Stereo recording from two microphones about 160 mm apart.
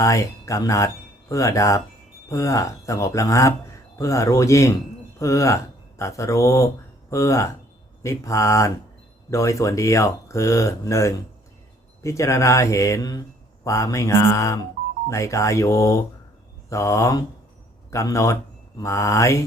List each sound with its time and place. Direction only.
0.0 s speech: 20° left (ahead or behind)